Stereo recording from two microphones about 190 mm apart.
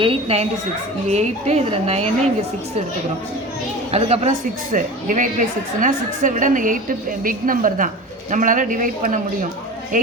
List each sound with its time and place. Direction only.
0.0 s a woman's voice: 30° right (ahead or behind)
3.9 s a woman's voice: 30° right (ahead or behind)